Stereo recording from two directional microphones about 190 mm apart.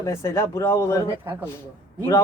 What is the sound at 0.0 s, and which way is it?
A man's voice, 15° left (ahead or behind).